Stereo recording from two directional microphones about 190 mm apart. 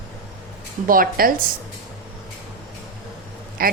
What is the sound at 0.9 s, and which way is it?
Speech, 50° right (ahead or behind).